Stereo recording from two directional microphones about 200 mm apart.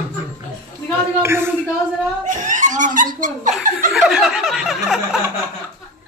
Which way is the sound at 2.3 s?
40° right (ahead or behind).